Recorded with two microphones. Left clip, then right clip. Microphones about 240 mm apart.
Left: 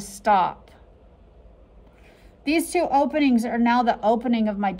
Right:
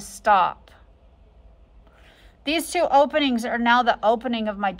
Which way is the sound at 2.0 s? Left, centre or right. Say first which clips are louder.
Left 1 dB; centre.